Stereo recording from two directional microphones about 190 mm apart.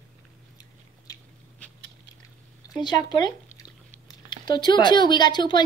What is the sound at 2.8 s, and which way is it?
Speech, 25° left (ahead or behind).